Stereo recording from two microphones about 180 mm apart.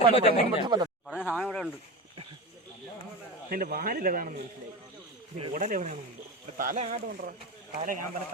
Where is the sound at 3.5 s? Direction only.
55° right (ahead or behind).